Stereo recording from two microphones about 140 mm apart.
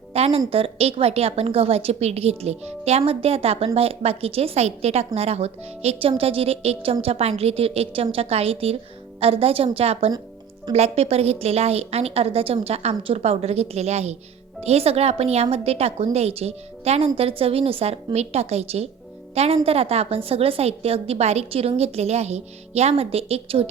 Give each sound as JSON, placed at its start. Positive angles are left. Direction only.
{"t": 0.1, "sound": "a woman's voice", "side_deg": -45}